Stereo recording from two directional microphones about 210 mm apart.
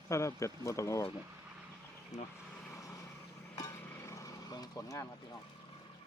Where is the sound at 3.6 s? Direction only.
15° left (ahead or behind).